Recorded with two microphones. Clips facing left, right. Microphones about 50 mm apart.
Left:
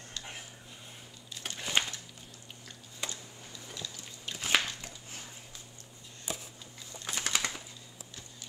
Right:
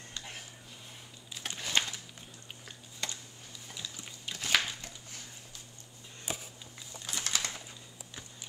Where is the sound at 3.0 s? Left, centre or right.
Centre.